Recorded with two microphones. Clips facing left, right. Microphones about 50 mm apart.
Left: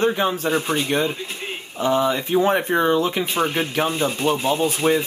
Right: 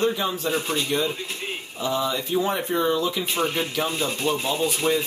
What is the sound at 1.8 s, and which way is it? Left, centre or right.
Speech, left.